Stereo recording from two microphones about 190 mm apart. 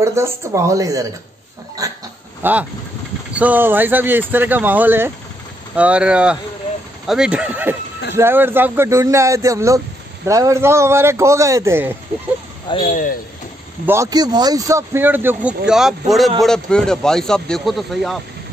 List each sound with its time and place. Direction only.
0.0 s speech: 15° right (ahead or behind)
12.8 s speech: 45° left (ahead or behind)
13.8 s speech: 15° right (ahead or behind); by 18.2 s centre (ahead or behind)